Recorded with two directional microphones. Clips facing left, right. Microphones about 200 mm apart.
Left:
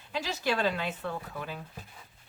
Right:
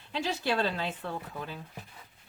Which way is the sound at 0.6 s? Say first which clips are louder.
Left 1 dB; 30° right (ahead or behind).